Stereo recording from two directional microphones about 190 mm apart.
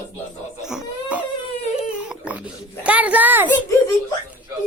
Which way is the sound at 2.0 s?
5° right (ahead or behind).